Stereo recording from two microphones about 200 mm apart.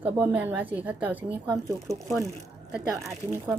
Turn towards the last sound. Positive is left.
turn(degrees=-15)  # may be behind; listen again after turning